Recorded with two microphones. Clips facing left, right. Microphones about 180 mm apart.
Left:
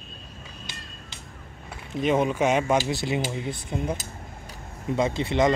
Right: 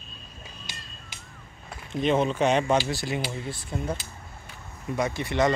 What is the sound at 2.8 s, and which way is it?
Speech, 20° left (ahead or behind).